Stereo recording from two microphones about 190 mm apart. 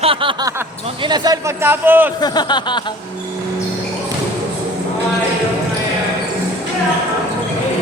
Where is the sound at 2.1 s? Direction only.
20° left (ahead or behind).